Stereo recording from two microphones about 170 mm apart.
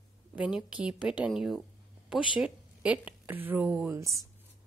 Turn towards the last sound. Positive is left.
turn(degrees=-15)  # may be behind; listen again after turning